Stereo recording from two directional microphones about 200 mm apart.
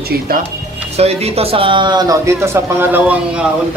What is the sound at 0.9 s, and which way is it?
A man's voice, 30° right (ahead or behind).